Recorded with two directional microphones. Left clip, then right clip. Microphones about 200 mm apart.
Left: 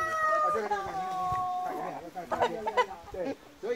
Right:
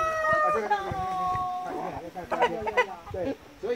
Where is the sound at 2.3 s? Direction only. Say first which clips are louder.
Right 3 dB; 20° right (ahead or behind).